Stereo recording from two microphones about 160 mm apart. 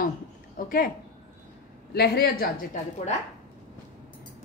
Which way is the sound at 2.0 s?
90° left.